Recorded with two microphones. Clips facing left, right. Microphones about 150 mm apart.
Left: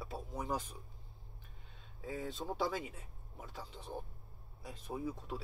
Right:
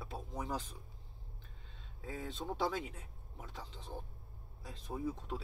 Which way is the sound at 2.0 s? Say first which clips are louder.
Left 2 dB; 5° left (ahead or behind).